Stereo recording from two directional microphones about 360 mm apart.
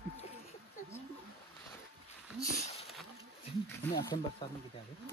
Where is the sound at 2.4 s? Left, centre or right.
Centre.